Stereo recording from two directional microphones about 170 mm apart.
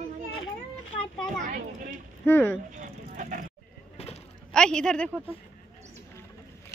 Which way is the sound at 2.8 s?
50° right (ahead or behind).